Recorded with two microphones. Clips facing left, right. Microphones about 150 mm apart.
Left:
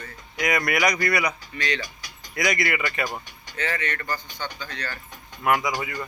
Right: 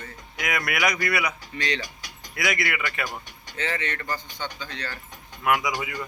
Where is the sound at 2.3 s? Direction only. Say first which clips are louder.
Left 3 dB; 5° right (ahead or behind).